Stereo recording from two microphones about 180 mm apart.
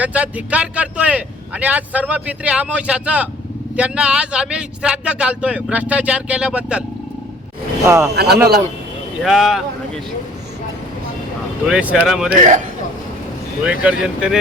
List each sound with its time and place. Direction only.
0.0 s speech: 10° right (ahead or behind)
7.9 s speech: 15° right (ahead or behind)
8.1 s speech: 65° right (ahead or behind)
9.2 s speech: centre (ahead or behind)
11.6 s speech: 5° right (ahead or behind)
12.4 s a man's voice: 45° right (ahead or behind)
13.7 s speech: 5° right (ahead or behind)